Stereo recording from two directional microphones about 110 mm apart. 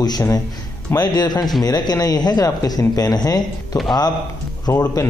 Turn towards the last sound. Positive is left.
turn(degrees=30)  # may be behind; listen again after turning